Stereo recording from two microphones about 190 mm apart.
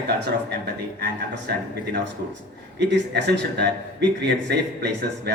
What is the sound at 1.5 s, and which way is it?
Speech, 55° right (ahead or behind).